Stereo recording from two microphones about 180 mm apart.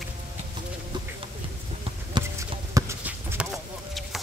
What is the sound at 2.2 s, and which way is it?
Clip-clop, 25° right (ahead or behind).